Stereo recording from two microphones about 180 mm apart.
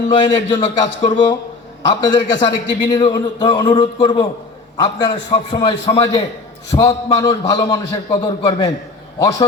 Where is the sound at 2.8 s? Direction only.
25° left (ahead or behind).